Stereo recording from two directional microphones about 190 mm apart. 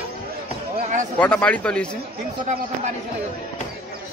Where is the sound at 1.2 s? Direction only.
5° left (ahead or behind).